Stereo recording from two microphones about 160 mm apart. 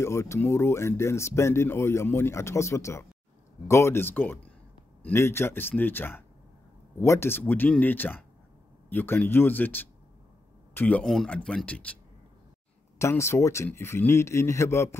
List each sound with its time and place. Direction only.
0.0 s speech: 15° left (ahead or behind)
13.0 s speech: 15° left (ahead or behind)